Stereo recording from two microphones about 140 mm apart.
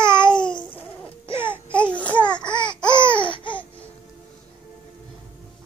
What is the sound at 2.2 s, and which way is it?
Babbling, 30° left (ahead or behind).